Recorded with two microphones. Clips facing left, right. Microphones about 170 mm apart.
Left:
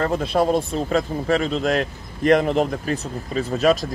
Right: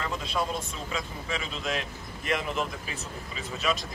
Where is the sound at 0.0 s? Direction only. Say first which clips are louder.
Left 11 dB; 55° left (ahead or behind).